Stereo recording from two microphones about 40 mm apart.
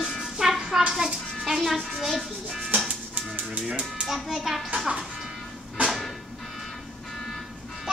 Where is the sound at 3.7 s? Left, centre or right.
Right.